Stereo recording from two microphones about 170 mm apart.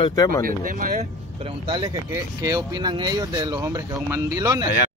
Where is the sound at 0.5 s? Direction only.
55° right (ahead or behind).